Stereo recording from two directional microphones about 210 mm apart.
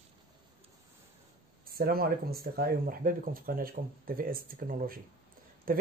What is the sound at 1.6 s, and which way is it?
Speech, 45° right (ahead or behind).